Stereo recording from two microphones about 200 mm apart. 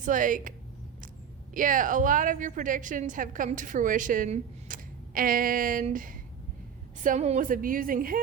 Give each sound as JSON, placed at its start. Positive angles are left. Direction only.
{"t": 0.0, "sound": "a woman's voice", "side_deg": -40}
{"t": 1.5, "sound": "a woman's voice", "side_deg": -40}